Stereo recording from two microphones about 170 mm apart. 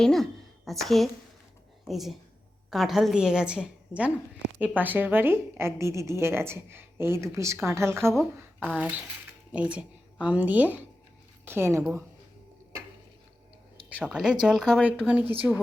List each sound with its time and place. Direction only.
0.0 s a woman's voice: centre (ahead or behind); by 8.1 s 15° right (ahead or behind)
8.5 s a woman's voice: 5° right (ahead or behind)
13.9 s a woman's voice: 5° right (ahead or behind)
15.3 s a woman's voice: 10° right (ahead or behind)